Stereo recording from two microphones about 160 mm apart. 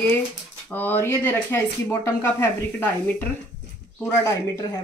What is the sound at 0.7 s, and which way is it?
Speech, 10° left (ahead or behind).